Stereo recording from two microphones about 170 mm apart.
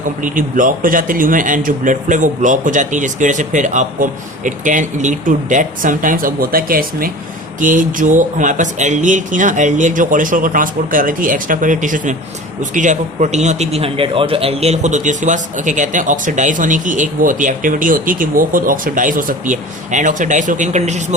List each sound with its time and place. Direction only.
0.2 s a man's voice: 50° right (ahead or behind)